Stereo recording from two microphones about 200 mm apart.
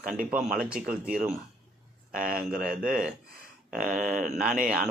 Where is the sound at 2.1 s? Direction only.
45° right (ahead or behind).